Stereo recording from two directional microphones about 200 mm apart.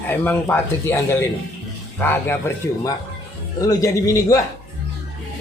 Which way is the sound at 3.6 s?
15° left (ahead or behind).